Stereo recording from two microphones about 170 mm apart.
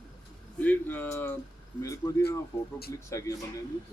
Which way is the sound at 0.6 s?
10° left (ahead or behind).